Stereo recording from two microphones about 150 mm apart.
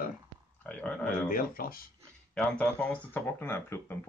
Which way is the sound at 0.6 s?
10° left (ahead or behind).